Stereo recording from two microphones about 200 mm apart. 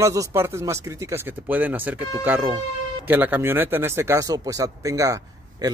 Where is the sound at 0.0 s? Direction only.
15° right (ahead or behind).